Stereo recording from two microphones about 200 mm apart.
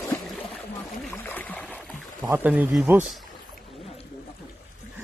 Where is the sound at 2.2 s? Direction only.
10° right (ahead or behind).